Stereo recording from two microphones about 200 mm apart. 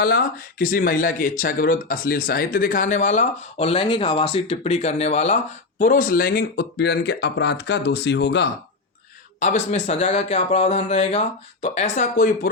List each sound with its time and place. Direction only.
0.0 s speech: 50° left (ahead or behind)
9.4 s speech: 35° left (ahead or behind)